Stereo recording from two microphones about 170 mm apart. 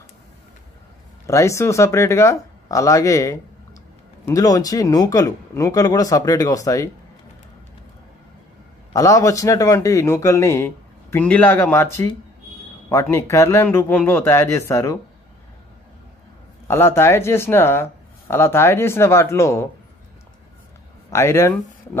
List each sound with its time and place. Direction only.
1.2 s speech: 15° left (ahead or behind)
8.9 s speech: 20° left (ahead or behind)
16.6 s speech: 15° left (ahead or behind)
21.1 s speech: 15° left (ahead or behind)